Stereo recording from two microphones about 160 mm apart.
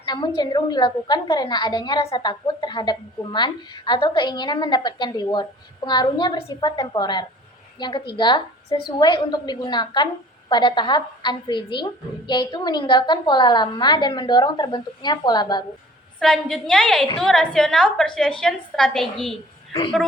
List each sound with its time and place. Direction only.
0.0 s a woman's voice: 30° left (ahead or behind)
16.2 s a woman's voice: 5° left (ahead or behind)